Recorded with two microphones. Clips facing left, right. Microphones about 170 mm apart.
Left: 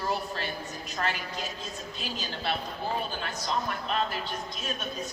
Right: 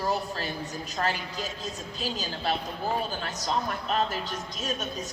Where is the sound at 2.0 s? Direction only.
40° right (ahead or behind).